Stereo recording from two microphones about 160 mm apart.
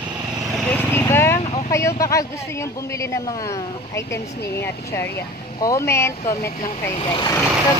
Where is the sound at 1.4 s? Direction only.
40° left (ahead or behind).